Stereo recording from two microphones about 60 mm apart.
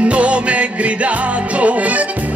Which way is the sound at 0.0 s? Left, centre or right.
Right.